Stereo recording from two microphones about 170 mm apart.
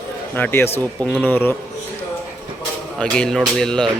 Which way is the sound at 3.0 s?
5° left (ahead or behind).